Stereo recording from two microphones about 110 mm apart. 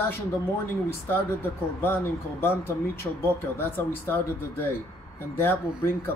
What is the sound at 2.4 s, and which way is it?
Speech, 25° left (ahead or behind).